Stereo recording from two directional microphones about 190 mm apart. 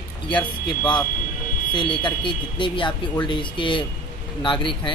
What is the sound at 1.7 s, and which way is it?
Speech, 25° left (ahead or behind).